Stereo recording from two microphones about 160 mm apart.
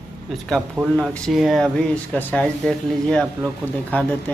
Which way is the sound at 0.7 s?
5° right (ahead or behind).